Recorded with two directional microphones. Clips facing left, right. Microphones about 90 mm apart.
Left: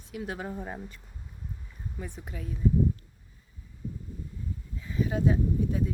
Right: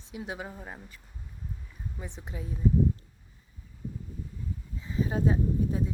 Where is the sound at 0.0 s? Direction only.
25° right (ahead or behind).